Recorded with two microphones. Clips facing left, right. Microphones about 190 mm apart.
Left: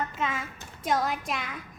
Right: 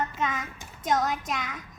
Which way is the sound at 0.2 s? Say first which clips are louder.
Right 1 dB; 30° left (ahead or behind).